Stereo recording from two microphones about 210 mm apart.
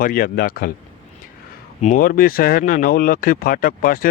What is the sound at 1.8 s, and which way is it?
Speech, 40° left (ahead or behind).